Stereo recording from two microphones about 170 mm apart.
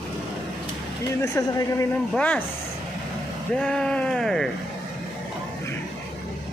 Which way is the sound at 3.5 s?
5° left (ahead or behind).